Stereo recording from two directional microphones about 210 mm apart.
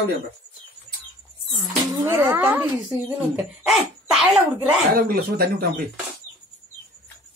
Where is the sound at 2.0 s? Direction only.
10° right (ahead or behind).